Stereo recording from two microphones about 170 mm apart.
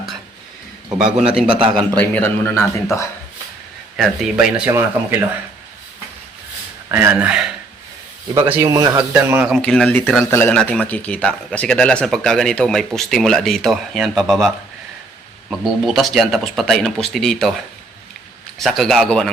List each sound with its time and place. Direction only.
1.2 s speech: 5° right (ahead or behind)
1.5 s a man's voice: 30° right (ahead or behind)
2.0 s speech: 10° left (ahead or behind)
3.9 s speech: centre (ahead or behind)
6.8 s speech: 15° right (ahead or behind)
8.4 s speech: 20° right (ahead or behind)
9.6 s speech: 5° left (ahead or behind)
18.6 s speech: centre (ahead or behind)